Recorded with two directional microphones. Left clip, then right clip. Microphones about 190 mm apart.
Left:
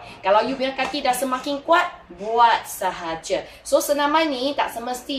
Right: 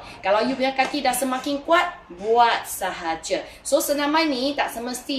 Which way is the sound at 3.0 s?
25° right (ahead or behind).